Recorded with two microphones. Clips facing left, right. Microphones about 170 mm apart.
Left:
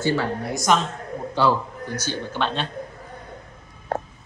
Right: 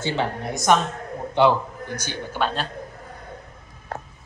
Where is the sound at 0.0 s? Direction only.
20° right (ahead or behind); by 2.7 s 5° right (ahead or behind).